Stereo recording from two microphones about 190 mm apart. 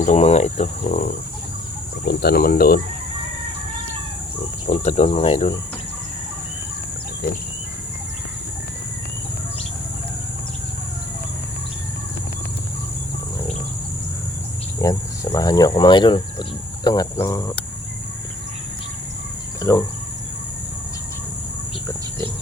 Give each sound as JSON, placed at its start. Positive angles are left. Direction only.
{"t": 0.0, "sound": "cricket", "side_deg": 35}
{"t": 2.0, "sound": "speech", "side_deg": 55}
{"t": 4.6, "sound": "cricket", "side_deg": 35}
{"t": 14.8, "sound": "speech", "side_deg": 15}
{"t": 19.7, "sound": "speech", "side_deg": 15}